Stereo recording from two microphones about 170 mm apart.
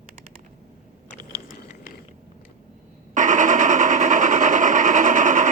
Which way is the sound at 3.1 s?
50° right (ahead or behind).